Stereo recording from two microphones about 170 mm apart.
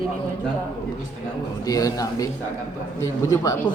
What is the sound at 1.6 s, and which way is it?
Speech, 20° left (ahead or behind).